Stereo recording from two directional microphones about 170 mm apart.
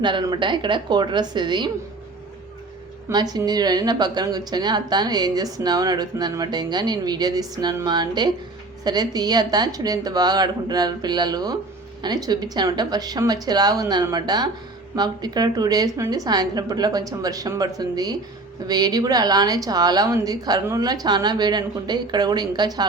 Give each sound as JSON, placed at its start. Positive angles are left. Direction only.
{"t": 0.0, "sound": "a woman's voice", "side_deg": -25}
{"t": 3.1, "sound": "a woman's voice", "side_deg": -25}